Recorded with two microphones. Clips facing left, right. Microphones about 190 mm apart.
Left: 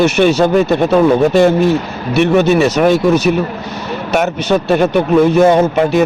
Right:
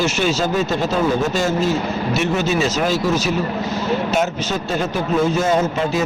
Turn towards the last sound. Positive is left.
turn(degrees=65)  # may be behind; listen again after turning